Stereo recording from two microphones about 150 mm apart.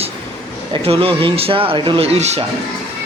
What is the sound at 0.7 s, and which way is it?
A man's voice, 35° right (ahead or behind).